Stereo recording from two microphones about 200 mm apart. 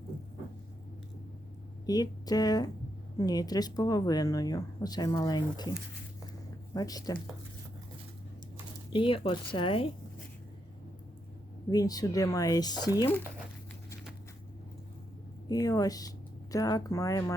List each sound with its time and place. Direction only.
1.9 s speech: 20° left (ahead or behind)
6.7 s speech: 20° left (ahead or behind)
8.9 s speech: 25° left (ahead or behind)
11.7 s speech: 20° left (ahead or behind)
15.4 s speech: 15° left (ahead or behind)